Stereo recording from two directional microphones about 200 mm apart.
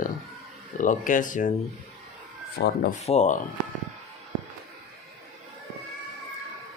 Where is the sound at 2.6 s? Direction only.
50° left (ahead or behind).